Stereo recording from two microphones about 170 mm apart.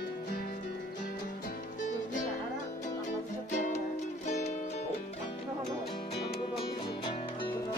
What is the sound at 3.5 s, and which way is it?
Music, 45° left (ahead or behind).